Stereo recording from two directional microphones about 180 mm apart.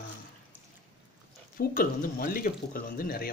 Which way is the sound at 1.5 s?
50° left (ahead or behind).